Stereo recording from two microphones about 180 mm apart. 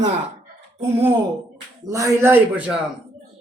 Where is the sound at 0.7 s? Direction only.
20° right (ahead or behind).